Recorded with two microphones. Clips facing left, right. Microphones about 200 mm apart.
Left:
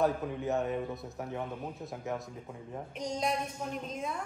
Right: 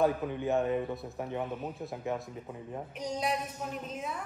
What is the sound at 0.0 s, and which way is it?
Speech, 20° right (ahead or behind).